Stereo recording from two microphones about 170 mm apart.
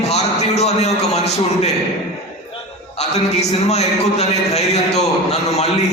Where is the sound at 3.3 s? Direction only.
40° left (ahead or behind).